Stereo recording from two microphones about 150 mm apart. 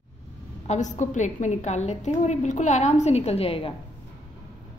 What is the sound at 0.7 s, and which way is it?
A woman's voice, 55° left (ahead or behind).